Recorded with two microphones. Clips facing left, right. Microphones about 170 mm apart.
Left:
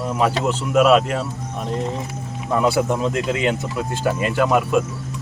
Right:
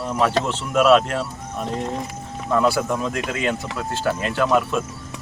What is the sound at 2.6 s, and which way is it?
Speech, 20° left (ahead or behind).